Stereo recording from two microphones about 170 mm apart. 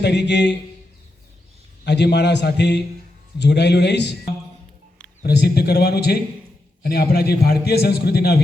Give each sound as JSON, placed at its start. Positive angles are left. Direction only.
{"t": 0.0, "sound": "a man's voice", "side_deg": 90}
{"t": 1.8, "sound": "a man's voice", "side_deg": 90}
{"t": 5.2, "sound": "a man's voice", "side_deg": 70}